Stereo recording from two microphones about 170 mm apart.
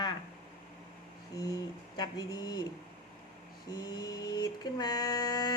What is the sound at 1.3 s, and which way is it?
Mantra, 20° left (ahead or behind).